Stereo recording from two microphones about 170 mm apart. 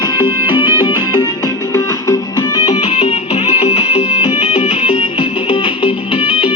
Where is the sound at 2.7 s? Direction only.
35° left (ahead or behind).